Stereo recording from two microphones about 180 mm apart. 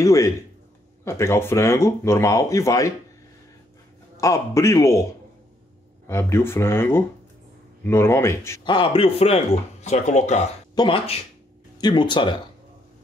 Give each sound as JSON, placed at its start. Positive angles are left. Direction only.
{"t": 0.0, "sound": "a man's voice", "side_deg": 15}
{"t": 4.2, "sound": "speech", "side_deg": 15}
{"t": 6.0, "sound": "speech", "side_deg": 15}
{"t": 8.6, "sound": "speech", "side_deg": 30}
{"t": 10.7, "sound": "a sound", "side_deg": 25}
{"t": 11.8, "sound": "speech", "side_deg": 25}